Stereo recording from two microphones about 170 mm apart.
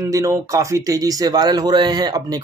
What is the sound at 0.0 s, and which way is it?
Speech, 20° right (ahead or behind).